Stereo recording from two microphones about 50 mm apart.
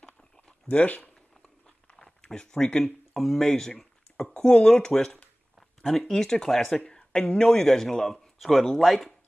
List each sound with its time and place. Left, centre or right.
0.7 s speech: left
2.0 s speech: centre
3.1 s a sound: centre
3.3 s speech: centre